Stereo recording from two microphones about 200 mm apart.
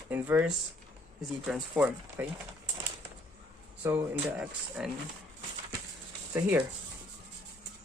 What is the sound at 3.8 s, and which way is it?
Speech, 10° right (ahead or behind).